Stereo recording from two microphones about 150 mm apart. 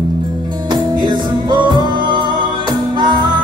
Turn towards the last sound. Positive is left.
turn(degrees=-30)  # may be behind; listen again after turning